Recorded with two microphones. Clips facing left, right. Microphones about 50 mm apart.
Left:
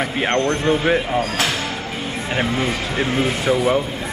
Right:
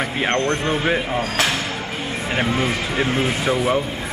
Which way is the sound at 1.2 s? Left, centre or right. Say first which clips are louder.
Even; right.